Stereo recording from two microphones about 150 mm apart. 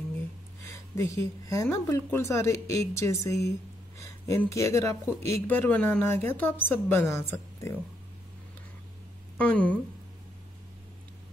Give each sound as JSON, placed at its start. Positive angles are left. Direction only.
{"t": 0.9, "sound": "speech", "side_deg": 20}
{"t": 9.4, "sound": "speech", "side_deg": 10}